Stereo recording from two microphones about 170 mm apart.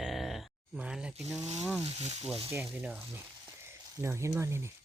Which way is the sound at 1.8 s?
40° right (ahead or behind).